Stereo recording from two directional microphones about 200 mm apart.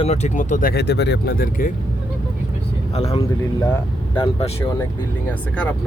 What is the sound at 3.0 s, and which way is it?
Speech, 30° left (ahead or behind).